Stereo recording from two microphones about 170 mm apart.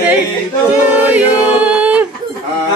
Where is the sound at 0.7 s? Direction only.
10° right (ahead or behind).